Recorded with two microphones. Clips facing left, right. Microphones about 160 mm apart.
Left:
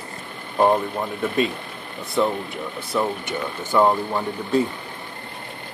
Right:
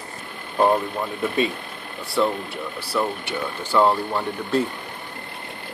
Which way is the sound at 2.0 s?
20° left (ahead or behind).